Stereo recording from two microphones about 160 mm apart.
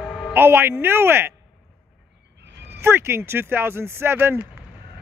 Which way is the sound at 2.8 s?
15° right (ahead or behind).